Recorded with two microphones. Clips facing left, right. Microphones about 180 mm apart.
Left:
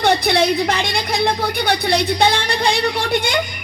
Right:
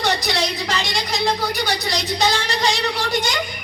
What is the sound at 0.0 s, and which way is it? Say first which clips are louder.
A woman's voice: left 6 dB; 55° left (ahead or behind).